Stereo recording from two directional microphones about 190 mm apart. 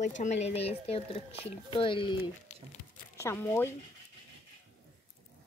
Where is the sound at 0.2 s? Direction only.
35° left (ahead or behind).